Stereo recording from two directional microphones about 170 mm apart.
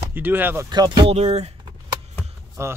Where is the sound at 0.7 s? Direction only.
25° right (ahead or behind).